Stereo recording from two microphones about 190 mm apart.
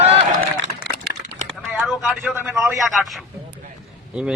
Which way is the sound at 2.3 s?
10° right (ahead or behind).